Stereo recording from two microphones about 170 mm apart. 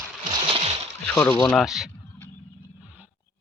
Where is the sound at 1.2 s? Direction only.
20° left (ahead or behind).